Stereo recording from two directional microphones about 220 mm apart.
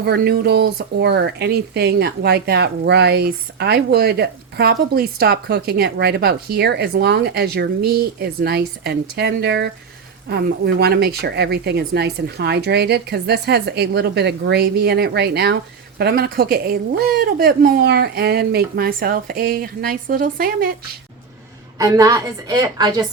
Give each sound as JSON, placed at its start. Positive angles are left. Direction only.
{"t": 0.0, "sound": "speech", "side_deg": -45}
{"t": 21.8, "sound": "a woman's voice", "side_deg": -15}